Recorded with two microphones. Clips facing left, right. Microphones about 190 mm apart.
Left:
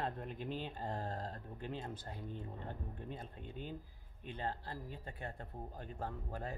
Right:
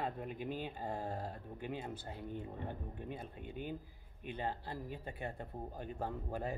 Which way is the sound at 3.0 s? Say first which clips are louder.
Right 2 dB; 10° right (ahead or behind).